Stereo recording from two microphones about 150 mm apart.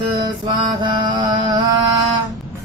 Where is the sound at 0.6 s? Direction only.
30° right (ahead or behind).